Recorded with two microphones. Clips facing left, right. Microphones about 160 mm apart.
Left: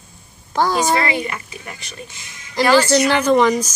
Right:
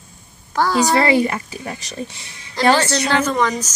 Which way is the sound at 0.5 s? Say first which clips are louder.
Even; 15° left (ahead or behind).